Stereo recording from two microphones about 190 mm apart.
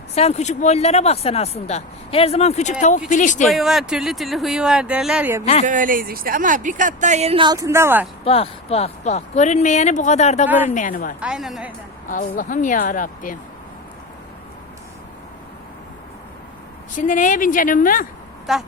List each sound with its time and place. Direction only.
0.1 s speech: 35° left (ahead or behind)
3.5 s speech: centre (ahead or behind)
5.6 s speech: 45° right (ahead or behind); by 8.0 s 15° right (ahead or behind)
8.2 s a woman's voice: 30° left (ahead or behind)
11.2 s speech: 5° right (ahead or behind)
12.0 s a woman's voice: 45° left (ahead or behind)
16.9 s a woman's voice: 45° left (ahead or behind)
18.5 s speech: centre (ahead or behind)